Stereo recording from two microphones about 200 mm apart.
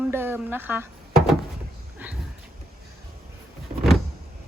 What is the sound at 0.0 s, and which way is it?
Speech, 10° right (ahead or behind).